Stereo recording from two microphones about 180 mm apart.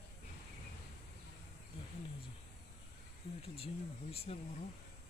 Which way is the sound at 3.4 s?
30° left (ahead or behind).